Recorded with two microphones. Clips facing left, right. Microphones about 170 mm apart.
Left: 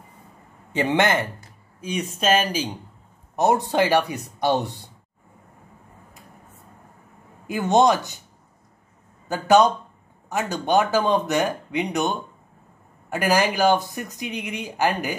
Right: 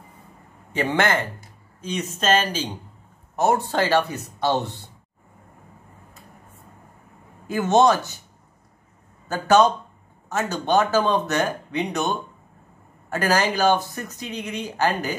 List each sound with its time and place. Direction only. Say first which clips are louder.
0.7 s speech: left 1 dB; 20° left (ahead or behind)
7.4 s speech: even; 15° left (ahead or behind)
9.3 s speech: even; 15° left (ahead or behind)